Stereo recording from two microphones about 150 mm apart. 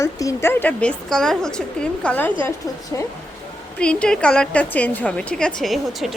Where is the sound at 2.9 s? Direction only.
20° left (ahead or behind).